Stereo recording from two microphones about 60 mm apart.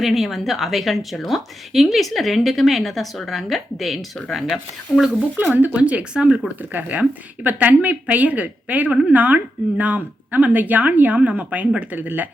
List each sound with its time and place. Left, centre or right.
0.0 s a woman's voice: centre
5.5 s speech: right
5.8 s speech: centre